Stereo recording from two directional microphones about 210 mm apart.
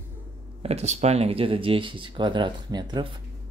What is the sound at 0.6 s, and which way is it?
Speech, 30° right (ahead or behind).